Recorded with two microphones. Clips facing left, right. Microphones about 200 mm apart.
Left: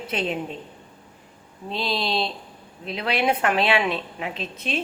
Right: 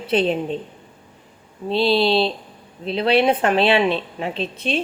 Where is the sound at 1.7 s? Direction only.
30° right (ahead or behind).